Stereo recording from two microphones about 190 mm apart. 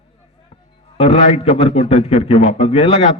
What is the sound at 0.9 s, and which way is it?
A man's voice, 30° left (ahead or behind).